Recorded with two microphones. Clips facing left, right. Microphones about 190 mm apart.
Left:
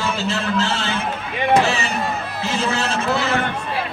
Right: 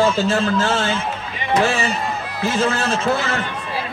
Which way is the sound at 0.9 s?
60° left (ahead or behind).